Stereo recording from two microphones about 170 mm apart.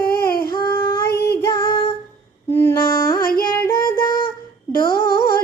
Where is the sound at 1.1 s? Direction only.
70° left (ahead or behind).